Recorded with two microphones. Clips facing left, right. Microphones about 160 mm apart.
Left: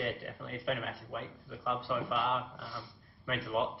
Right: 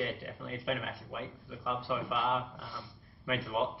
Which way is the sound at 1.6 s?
20° right (ahead or behind).